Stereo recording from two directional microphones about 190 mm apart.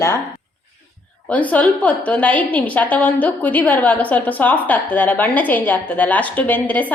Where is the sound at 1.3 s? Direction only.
10° left (ahead or behind).